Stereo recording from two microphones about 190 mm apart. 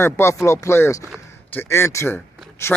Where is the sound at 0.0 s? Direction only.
15° left (ahead or behind).